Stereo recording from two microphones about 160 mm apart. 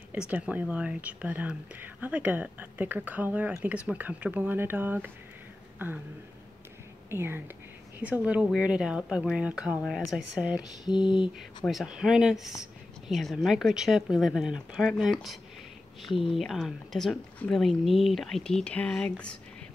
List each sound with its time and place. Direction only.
0.3 s speech: 10° right (ahead or behind)
7.1 s speech: 15° right (ahead or behind)
10.9 s a sound: 30° left (ahead or behind)
11.3 s speech: centre (ahead or behind)